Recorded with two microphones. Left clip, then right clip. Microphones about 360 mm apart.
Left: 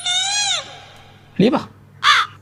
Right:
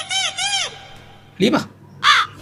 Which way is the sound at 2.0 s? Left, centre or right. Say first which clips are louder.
Even; centre.